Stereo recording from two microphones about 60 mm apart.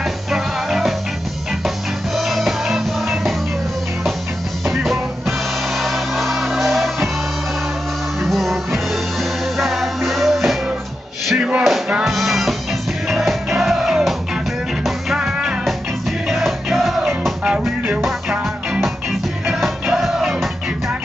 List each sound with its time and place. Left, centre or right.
0.3 s music: centre
2.1 s music: centre
4.6 s music: centre
8.2 s music: centre
9.6 s music: centre
11.3 s a sound: centre
12.0 s music: centre
15.1 s music: centre
16.3 s music: centre
17.5 s music: centre
19.4 s music: centre